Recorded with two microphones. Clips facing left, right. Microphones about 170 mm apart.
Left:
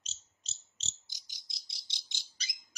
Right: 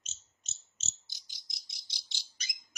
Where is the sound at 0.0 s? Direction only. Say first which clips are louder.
Even; 35° left (ahead or behind).